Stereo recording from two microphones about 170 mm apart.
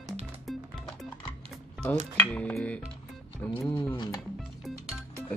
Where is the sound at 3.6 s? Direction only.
10° left (ahead or behind).